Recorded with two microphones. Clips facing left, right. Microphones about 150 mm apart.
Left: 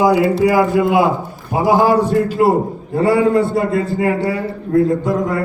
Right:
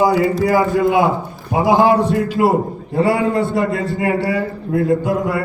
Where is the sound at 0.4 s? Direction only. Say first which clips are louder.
Left 1 dB; 5° left (ahead or behind).